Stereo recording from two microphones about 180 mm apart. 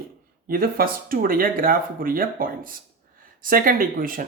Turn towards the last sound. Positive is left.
turn(degrees=-50)  # may be behind; listen again after turning